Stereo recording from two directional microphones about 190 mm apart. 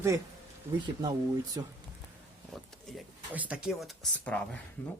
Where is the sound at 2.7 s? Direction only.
Centre (ahead or behind).